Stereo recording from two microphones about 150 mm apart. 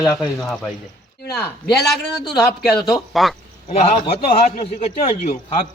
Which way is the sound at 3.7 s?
45° left (ahead or behind).